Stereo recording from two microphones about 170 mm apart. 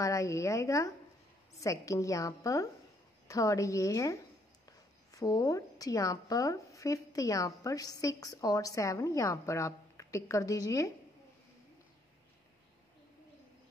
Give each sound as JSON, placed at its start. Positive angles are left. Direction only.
{"t": 0.0, "sound": "a woman's voice", "side_deg": 20}